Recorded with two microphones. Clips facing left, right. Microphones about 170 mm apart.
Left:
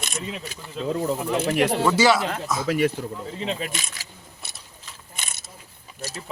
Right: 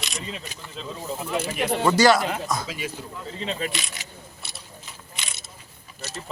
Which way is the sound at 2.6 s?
60° left (ahead or behind).